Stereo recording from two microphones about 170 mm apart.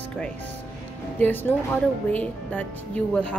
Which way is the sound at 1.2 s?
10° left (ahead or behind).